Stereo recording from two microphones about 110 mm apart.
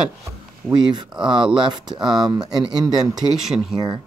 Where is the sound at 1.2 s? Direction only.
45° right (ahead or behind).